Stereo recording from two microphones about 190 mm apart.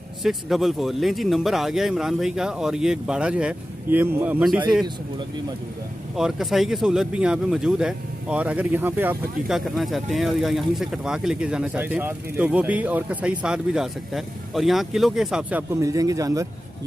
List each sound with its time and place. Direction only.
0.2 s speech: centre (ahead or behind)
6.1 s speech: centre (ahead or behind)
15.7 s speech: 15° right (ahead or behind)